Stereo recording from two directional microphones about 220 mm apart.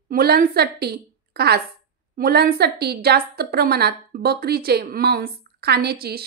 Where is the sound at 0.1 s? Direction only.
45° right (ahead or behind).